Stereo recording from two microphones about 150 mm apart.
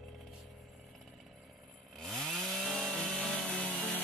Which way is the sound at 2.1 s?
Centre (ahead or behind).